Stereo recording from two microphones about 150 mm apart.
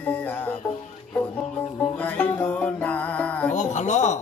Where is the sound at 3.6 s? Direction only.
55° left (ahead or behind).